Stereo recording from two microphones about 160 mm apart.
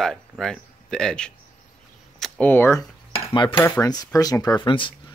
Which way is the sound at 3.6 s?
20° left (ahead or behind).